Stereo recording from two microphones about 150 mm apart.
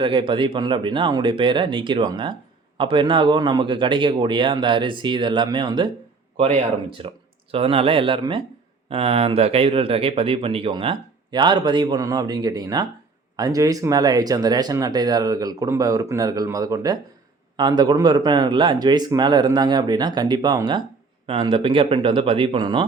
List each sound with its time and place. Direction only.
0.0 s speech: 35° right (ahead or behind)
6.3 s speech: 45° right (ahead or behind)